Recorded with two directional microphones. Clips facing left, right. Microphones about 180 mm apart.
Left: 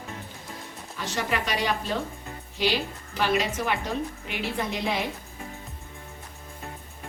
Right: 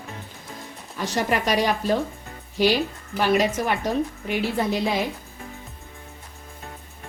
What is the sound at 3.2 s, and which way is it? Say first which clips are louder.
Speech: right 5 dB; 45° right (ahead or behind).